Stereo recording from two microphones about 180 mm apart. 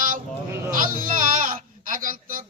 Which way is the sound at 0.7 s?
50° right (ahead or behind).